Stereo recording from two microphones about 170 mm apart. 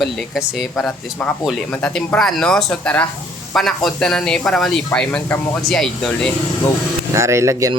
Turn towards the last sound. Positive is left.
turn(degrees=-20)  # may be behind; listen again after turning